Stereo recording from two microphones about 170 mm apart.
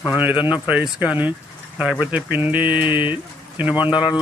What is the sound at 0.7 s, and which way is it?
Speech, 5° right (ahead or behind).